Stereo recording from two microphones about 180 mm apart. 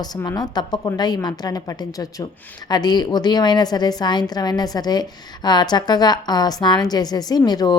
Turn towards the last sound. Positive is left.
turn(degrees=25)  # may be behind; listen again after turning